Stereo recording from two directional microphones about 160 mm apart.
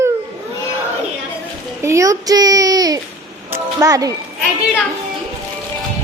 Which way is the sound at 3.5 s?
20° right (ahead or behind).